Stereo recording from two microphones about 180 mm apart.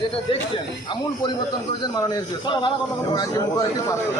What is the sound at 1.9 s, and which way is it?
Speech, 20° left (ahead or behind).